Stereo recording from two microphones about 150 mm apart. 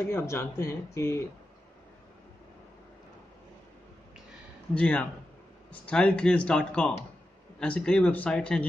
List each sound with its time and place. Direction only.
0.1 s speech: 15° left (ahead or behind)
4.7 s speech: 10° left (ahead or behind)